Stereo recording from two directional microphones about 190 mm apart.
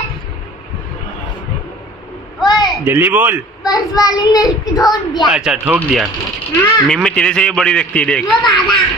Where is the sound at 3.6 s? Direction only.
20° left (ahead or behind).